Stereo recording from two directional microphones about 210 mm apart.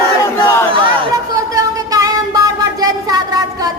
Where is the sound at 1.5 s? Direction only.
15° right (ahead or behind).